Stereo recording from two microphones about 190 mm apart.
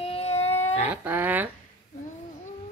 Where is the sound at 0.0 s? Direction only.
30° left (ahead or behind).